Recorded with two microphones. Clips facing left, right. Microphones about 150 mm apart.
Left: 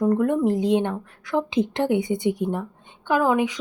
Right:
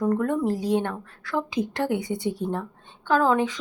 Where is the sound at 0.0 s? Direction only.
15° left (ahead or behind).